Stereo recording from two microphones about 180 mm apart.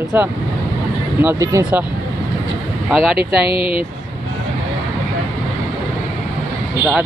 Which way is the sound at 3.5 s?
30° left (ahead or behind).